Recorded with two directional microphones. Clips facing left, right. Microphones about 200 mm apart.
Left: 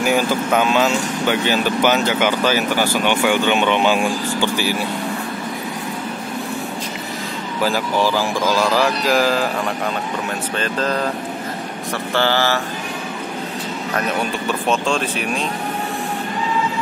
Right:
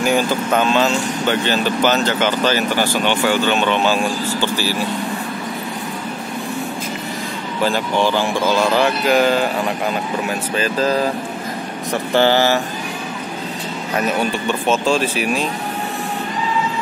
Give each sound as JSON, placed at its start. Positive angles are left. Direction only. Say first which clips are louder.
{"t": 0.0, "sound": "speech", "louder": "even", "side_deg": 10}
{"t": 7.6, "sound": "speech", "louder": "right 1 dB", "side_deg": 5}
{"t": 10.5, "sound": "speech", "louder": "right 4 dB", "side_deg": -5}
{"t": 11.9, "sound": "speech", "louder": "right 4 dB", "side_deg": -15}
{"t": 13.9, "sound": "speech", "louder": "right 3 dB", "side_deg": -5}